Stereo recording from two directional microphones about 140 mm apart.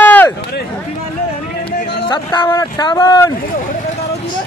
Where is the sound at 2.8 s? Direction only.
35° left (ahead or behind).